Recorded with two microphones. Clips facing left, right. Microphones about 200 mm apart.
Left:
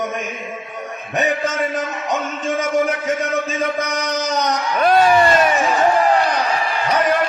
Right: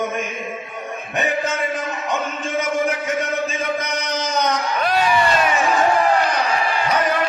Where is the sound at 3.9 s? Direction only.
40° left (ahead or behind).